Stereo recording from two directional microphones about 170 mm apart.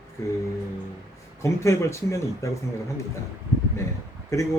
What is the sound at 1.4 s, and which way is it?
Speech, 15° left (ahead or behind).